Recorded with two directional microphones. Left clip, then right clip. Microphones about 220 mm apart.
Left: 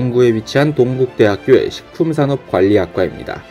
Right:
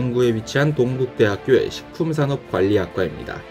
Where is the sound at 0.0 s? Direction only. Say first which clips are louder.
Left 6 dB; 25° left (ahead or behind).